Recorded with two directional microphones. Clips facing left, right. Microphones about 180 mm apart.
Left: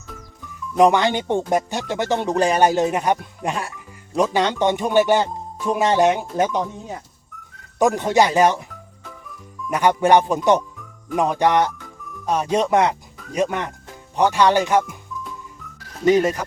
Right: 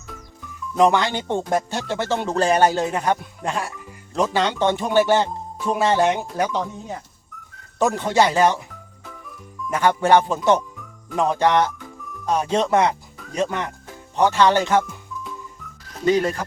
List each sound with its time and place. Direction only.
0.8 s speech: 20° left (ahead or behind)
7.8 s speech: 15° left (ahead or behind)
9.6 s speech: 15° left (ahead or behind)
16.0 s speech: 20° left (ahead or behind)